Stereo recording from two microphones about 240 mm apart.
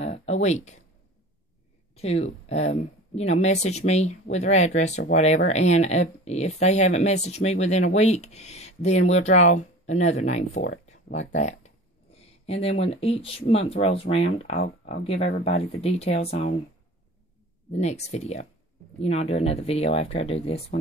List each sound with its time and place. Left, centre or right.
0.1 s a sound: left
2.0 s speech: left
10.6 s a sound: left
12.6 s speech: left
14.6 s speech: left
15.0 s speech: left
17.6 s speech: left